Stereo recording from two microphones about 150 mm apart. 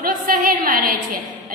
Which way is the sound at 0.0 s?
65° right (ahead or behind).